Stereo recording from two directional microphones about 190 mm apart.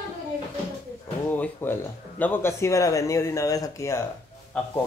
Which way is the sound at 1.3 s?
10° left (ahead or behind).